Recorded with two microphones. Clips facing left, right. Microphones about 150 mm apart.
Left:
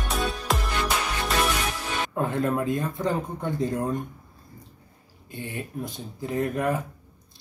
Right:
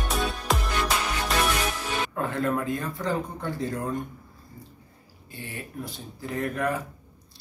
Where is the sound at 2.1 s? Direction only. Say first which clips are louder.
Left 3 dB; 20° left (ahead or behind).